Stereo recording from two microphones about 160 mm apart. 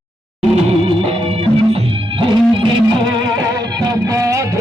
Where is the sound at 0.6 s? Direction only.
35° right (ahead or behind).